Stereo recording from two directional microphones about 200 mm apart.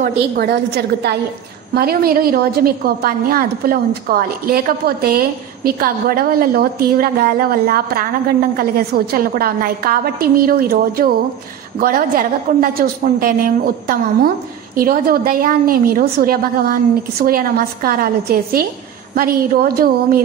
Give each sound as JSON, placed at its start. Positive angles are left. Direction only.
{"t": 0.0, "sound": "a woman's voice", "side_deg": -50}
{"t": 14.8, "sound": "a woman's voice", "side_deg": -45}